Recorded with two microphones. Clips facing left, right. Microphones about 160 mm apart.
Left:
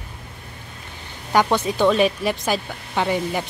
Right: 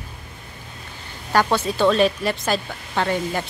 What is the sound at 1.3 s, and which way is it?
A woman's voice, 15° left (ahead or behind).